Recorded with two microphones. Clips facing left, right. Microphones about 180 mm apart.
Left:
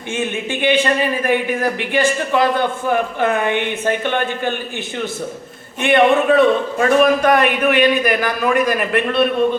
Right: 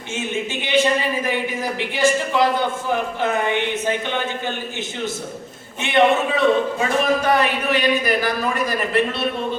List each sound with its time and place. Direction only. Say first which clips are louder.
0.1 s a man's voice: left 3 dB; 55° left (ahead or behind)
5.8 s a man's voice: left 4 dB; 55° left (ahead or behind)